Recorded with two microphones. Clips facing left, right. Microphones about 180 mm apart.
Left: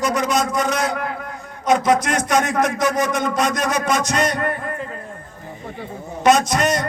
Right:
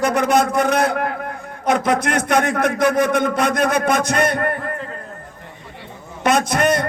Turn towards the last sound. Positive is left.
turn(degrees=-55)  # may be behind; listen again after turning